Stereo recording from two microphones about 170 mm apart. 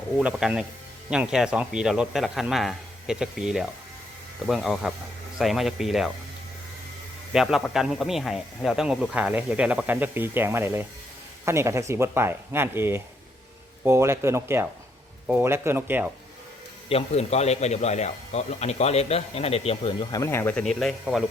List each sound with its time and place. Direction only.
0.2 s speech: 5° right (ahead or behind)
7.3 s speech: centre (ahead or behind)
16.9 s speech: 40° left (ahead or behind); by 21.2 s centre (ahead or behind)